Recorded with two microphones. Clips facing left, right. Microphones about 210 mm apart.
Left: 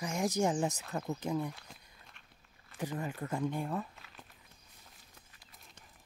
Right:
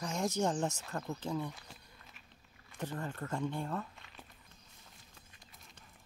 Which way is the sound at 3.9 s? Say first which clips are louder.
Even; centre (ahead or behind).